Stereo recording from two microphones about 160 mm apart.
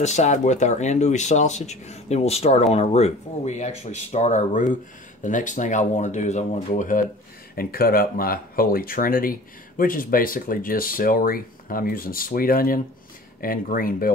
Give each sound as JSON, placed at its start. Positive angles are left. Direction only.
{"t": 0.0, "sound": "speech", "side_deg": 45}
{"t": 7.5, "sound": "speech", "side_deg": 65}